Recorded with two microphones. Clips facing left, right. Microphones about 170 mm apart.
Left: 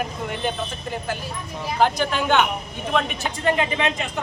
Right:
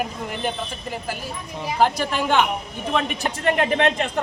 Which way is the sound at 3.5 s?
55° right (ahead or behind).